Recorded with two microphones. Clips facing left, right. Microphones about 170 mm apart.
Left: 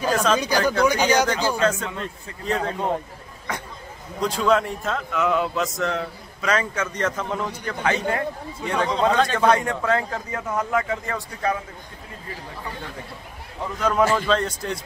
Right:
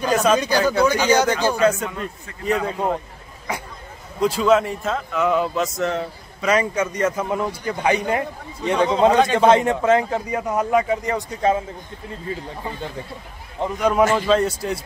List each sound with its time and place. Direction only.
0.1 s speech: 10° right (ahead or behind)
0.8 s speech: 15° left (ahead or behind)
1.6 s speech: 10° right (ahead or behind)
3.5 s a sound: 10° right (ahead or behind)
4.2 s a man's voice: 5° right (ahead or behind); by 12.9 s 25° right (ahead or behind)
13.6 s speech: 10° right (ahead or behind)